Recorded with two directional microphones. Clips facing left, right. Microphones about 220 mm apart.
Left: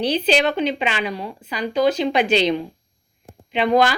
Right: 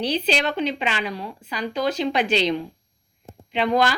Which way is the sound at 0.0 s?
60° left (ahead or behind).